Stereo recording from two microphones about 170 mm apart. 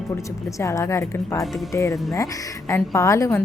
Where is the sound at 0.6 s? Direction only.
15° left (ahead or behind).